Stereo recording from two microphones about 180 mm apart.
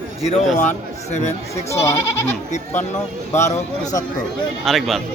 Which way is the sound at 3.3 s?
40° left (ahead or behind).